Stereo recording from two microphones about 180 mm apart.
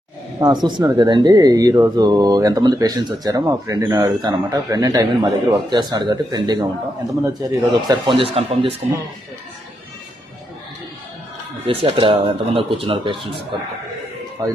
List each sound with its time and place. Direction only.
0.3 s speech: 20° right (ahead or behind)
8.2 s speech: 30° right (ahead or behind)
11.6 s speech: 30° right (ahead or behind)